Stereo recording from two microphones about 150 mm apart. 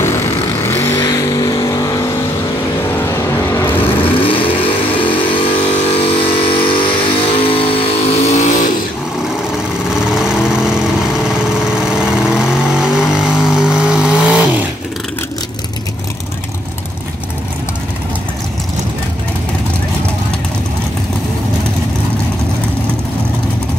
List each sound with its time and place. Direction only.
0.0 s vehicle: 15° left (ahead or behind)
3.1 s vehicle: 20° left (ahead or behind)
4.0 s vehicle: 35° left (ahead or behind); by 8.7 s 55° left (ahead or behind)
10.1 s lawn mower: 5° right (ahead or behind)
12.0 s vehicle: 5° right (ahead or behind)